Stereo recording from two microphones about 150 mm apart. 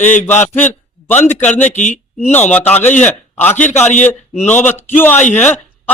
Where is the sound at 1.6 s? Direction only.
55° left (ahead or behind).